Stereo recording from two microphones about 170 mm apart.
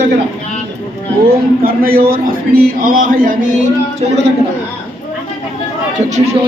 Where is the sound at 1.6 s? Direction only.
60° right (ahead or behind).